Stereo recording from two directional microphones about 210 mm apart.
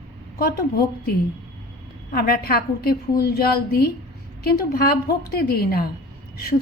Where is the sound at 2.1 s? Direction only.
45° left (ahead or behind).